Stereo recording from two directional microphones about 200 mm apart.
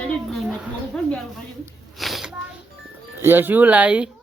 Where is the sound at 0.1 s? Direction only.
Centre (ahead or behind).